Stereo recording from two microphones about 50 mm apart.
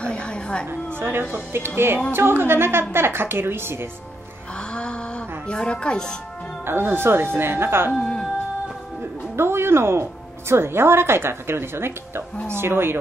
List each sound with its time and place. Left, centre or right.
0.0 s a sound: centre
0.7 s a woman's voice: right
5.5 s speech: centre
6.6 s a woman's voice: right
7.9 s music: centre
9.4 s a woman's voice: right